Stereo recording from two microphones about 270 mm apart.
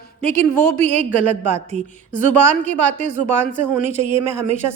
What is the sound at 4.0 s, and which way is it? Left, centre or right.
Speech, right.